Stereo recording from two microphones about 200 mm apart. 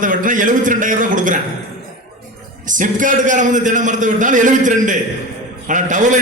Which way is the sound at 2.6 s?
40° right (ahead or behind).